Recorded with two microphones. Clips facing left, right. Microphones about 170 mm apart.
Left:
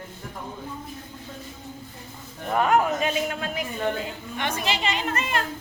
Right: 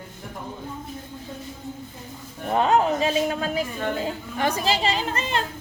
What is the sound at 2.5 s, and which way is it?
A man's voice, 25° right (ahead or behind).